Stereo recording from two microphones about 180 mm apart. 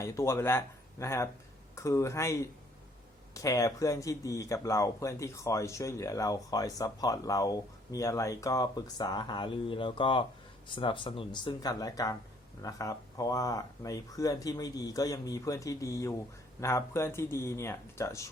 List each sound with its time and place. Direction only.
0.0 s speech: 15° left (ahead or behind)